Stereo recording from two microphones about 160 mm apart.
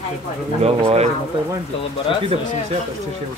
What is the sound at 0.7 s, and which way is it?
Speech, 40° right (ahead or behind).